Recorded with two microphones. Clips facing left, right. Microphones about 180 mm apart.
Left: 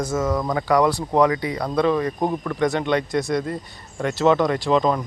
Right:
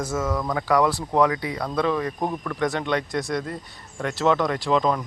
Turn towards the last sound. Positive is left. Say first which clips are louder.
# left 3 dB
turn(degrees=0)  # may be behind; listen again after turning